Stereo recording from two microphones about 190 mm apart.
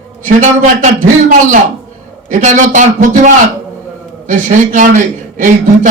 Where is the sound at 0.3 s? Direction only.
40° right (ahead or behind).